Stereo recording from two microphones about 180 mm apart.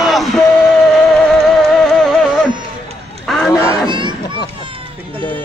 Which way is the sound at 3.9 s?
25° right (ahead or behind).